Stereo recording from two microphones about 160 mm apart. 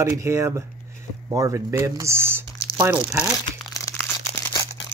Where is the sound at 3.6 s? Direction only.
20° left (ahead or behind).